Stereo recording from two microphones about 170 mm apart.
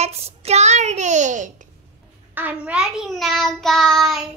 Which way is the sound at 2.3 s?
10° right (ahead or behind).